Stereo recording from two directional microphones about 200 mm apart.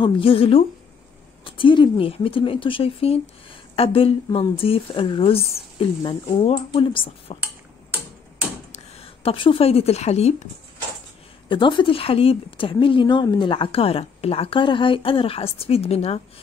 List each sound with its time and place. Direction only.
0.0 s speech: 25° left (ahead or behind)
8.7 s a woman's voice: 30° left (ahead or behind)
11.4 s speech: 25° left (ahead or behind)